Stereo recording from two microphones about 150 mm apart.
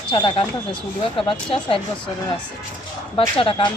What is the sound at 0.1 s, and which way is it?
Speech, 35° left (ahead or behind).